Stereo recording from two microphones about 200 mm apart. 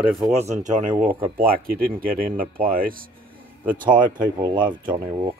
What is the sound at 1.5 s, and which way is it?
Speech, 50° right (ahead or behind).